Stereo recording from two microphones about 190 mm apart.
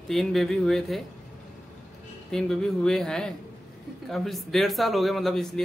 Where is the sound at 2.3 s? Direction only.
5° left (ahead or behind).